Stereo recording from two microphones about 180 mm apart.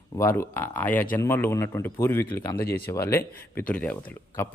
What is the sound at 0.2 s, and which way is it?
A man's voice, 15° left (ahead or behind).